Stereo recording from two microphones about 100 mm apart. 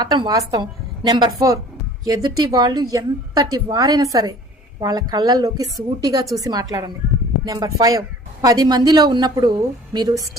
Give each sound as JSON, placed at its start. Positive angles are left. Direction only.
{"t": 0.0, "sound": "speech", "side_deg": -45}
{"t": 0.6, "sound": "a woman's voice", "side_deg": -50}
{"t": 2.0, "sound": "speech", "side_deg": -40}